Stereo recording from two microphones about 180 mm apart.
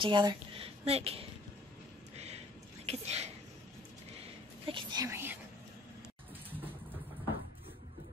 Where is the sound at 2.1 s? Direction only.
35° right (ahead or behind).